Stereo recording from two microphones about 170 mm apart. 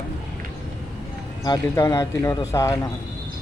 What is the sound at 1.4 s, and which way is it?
Speech, 25° left (ahead or behind).